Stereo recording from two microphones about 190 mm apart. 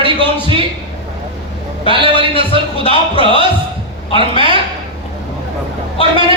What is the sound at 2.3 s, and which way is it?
Speech, 30° left (ahead or behind).